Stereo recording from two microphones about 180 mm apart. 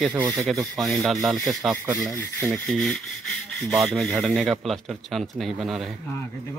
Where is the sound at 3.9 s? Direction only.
Centre (ahead or behind).